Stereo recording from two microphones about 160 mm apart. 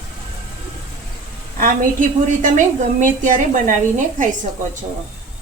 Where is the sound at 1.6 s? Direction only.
55° right (ahead or behind).